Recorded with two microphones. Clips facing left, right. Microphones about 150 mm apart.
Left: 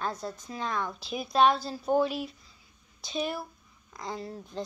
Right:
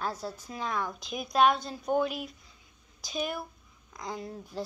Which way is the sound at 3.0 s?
Centre (ahead or behind).